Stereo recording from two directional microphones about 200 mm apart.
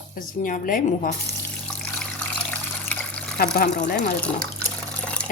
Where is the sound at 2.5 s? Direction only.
5° left (ahead or behind).